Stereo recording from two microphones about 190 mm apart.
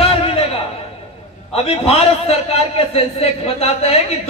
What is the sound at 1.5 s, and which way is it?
Speech, 35° left (ahead or behind).